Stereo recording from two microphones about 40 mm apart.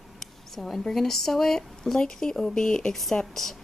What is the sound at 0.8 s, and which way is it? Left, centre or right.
Speech, centre.